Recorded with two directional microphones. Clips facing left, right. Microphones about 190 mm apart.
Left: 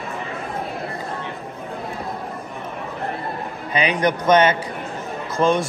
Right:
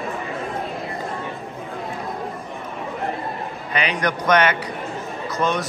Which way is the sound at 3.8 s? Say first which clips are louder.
Left 4 dB; 25° left (ahead or behind).